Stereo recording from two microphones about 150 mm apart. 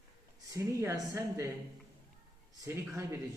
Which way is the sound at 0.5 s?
20° right (ahead or behind).